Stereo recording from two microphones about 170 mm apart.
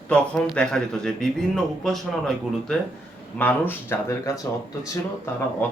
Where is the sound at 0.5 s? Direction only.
5° left (ahead or behind).